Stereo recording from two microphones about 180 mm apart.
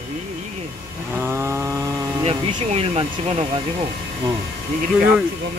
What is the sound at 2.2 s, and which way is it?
Speech, 35° right (ahead or behind).